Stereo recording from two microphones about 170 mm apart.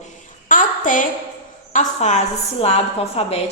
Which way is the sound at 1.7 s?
45° left (ahead or behind).